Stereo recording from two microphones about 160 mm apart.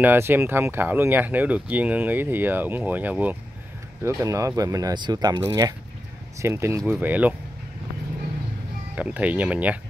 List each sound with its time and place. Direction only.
0.0 s speech: 15° right (ahead or behind)
8.9 s speech: 10° right (ahead or behind)